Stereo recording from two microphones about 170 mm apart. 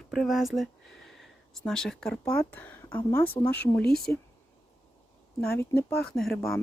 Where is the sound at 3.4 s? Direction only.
30° left (ahead or behind).